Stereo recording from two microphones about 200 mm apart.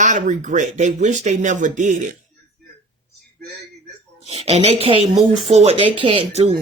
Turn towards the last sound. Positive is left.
turn(degrees=-30)  # may be behind; listen again after turning